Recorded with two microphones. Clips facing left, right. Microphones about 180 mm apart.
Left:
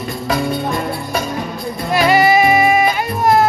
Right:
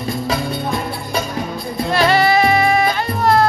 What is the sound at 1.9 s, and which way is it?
Music, 15° left (ahead or behind).